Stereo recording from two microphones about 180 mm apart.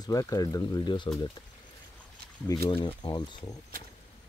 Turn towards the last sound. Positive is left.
turn(degrees=25)  # may be behind; listen again after turning